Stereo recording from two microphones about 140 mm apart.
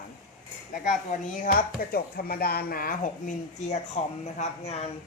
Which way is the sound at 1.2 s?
90° left.